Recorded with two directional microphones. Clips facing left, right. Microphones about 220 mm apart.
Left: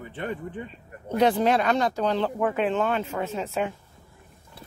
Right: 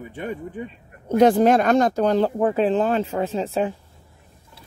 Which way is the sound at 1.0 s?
45° right (ahead or behind).